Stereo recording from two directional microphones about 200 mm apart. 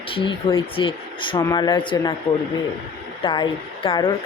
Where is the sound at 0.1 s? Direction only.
25° left (ahead or behind).